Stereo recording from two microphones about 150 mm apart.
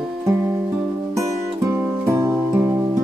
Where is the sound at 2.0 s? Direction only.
20° right (ahead or behind).